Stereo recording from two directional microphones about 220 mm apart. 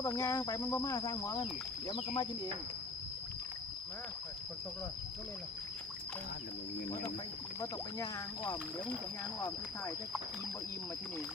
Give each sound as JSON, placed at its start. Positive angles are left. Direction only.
{"t": 0.0, "sound": "speech", "side_deg": 15}
{"t": 7.6, "sound": "speech", "side_deg": 15}